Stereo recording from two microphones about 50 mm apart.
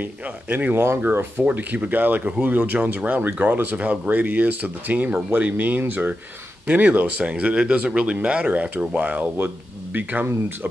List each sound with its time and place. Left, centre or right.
0.0 s speech: right
0.7 s speech: right
1.5 s speech: right